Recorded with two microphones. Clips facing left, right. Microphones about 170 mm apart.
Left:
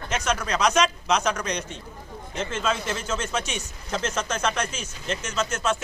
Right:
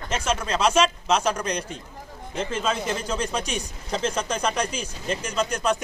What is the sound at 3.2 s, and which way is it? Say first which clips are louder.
Speech: right 2 dB; 35° right (ahead or behind).